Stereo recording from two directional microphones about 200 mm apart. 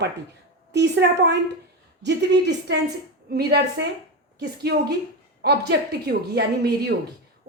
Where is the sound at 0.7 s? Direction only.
60° right (ahead or behind).